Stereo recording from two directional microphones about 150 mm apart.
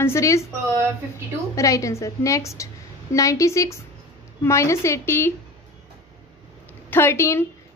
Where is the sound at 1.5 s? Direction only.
20° left (ahead or behind).